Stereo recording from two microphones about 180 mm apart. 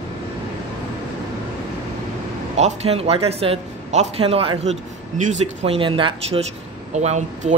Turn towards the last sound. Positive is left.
turn(degrees=-40)  # may be behind; listen again after turning